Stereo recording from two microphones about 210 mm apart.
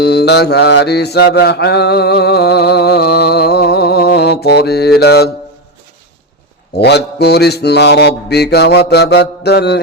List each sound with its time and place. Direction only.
0.0 s mantra: 50° left (ahead or behind)
6.7 s mantra: 50° left (ahead or behind)